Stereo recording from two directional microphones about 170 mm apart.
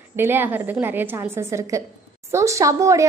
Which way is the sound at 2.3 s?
20° right (ahead or behind).